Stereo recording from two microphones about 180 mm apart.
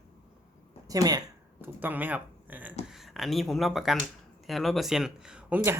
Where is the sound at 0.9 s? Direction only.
20° right (ahead or behind).